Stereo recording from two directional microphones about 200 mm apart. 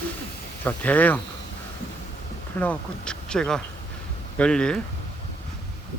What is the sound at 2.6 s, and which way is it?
Speech, 5° left (ahead or behind).